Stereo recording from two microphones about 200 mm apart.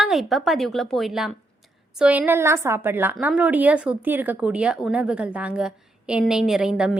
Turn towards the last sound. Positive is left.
turn(degrees=-5)  # may be behind; listen again after turning